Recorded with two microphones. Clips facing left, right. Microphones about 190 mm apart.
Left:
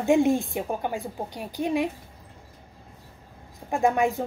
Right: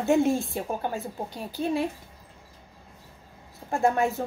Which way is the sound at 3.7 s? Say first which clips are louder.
Left 1 dB; 15° left (ahead or behind).